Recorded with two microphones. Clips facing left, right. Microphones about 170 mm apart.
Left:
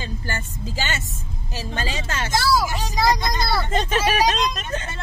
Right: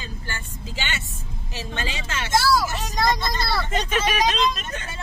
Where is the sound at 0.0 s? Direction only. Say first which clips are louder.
Left 5 dB; 40° left (ahead or behind).